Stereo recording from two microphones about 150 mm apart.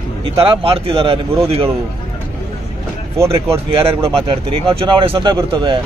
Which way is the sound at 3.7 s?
40° right (ahead or behind).